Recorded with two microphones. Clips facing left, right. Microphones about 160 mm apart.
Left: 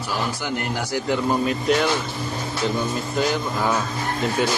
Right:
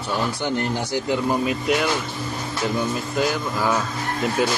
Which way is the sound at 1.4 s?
5° right (ahead or behind).